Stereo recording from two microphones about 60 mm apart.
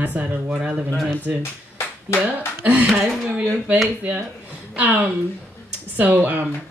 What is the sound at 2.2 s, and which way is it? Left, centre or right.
Speech, right.